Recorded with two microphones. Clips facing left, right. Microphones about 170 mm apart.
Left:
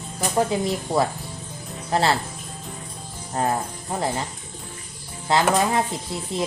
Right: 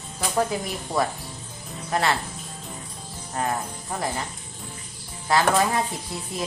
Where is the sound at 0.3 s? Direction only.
25° left (ahead or behind).